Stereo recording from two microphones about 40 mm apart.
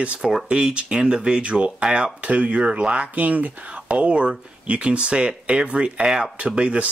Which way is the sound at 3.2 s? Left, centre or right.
Right.